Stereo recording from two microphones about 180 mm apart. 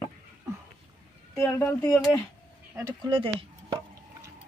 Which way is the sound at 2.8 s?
25° right (ahead or behind).